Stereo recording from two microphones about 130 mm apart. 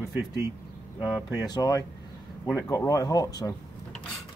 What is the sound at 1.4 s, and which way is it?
Speech, 30° left (ahead or behind).